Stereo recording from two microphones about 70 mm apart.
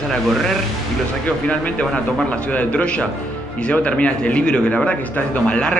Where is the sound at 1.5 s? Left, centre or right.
Centre.